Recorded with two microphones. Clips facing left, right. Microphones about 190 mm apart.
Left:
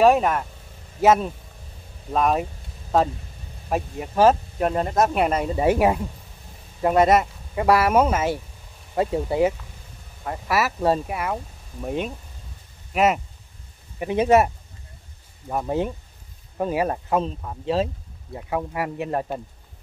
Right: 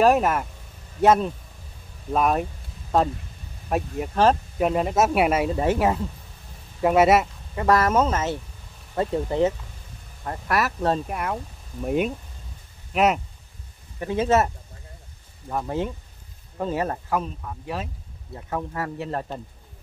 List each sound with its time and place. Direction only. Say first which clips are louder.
0.0 s speech: left 1 dB; centre (ahead or behind)
3.6 s speech: right 1 dB; 5° left (ahead or behind)
4.6 s speech: even; 5° right (ahead or behind)
5.6 s speech: left 3 dB; 15° left (ahead or behind)
6.8 s speech: even; 5° right (ahead or behind)
7.5 s speech: left 2 dB; 10° left (ahead or behind)
13.9 s speech: left 3 dB; 15° left (ahead or behind)
15.5 s speech: left 2 dB; 15° left (ahead or behind)
18.3 s speech: left 3 dB; 10° left (ahead or behind)